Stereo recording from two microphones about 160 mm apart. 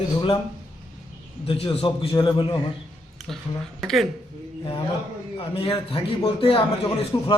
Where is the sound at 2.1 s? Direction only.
25° left (ahead or behind).